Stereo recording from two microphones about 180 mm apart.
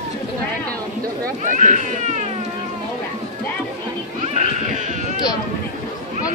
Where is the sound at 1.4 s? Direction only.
40° right (ahead or behind).